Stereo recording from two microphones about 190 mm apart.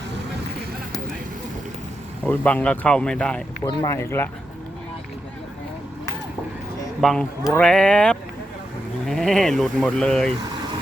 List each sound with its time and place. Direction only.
2.2 s speech: 10° left (ahead or behind)
3.6 s speech: 20° left (ahead or behind)
7.0 s speech: centre (ahead or behind)